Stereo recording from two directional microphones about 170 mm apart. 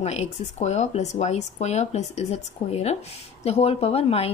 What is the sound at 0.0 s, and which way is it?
Speech, 40° left (ahead or behind).